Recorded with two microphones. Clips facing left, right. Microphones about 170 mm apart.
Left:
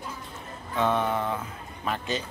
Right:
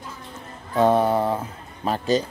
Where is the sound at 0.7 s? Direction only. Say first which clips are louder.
Right 7 dB; 35° right (ahead or behind).